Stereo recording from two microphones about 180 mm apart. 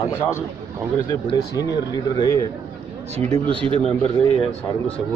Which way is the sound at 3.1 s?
35° right (ahead or behind).